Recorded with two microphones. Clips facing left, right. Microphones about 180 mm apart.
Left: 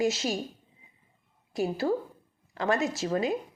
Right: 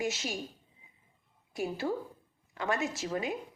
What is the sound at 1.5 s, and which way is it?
A woman's voice, 35° left (ahead or behind).